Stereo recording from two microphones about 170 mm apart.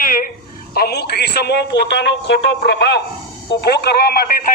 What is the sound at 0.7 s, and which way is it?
Speech, 70° left (ahead or behind).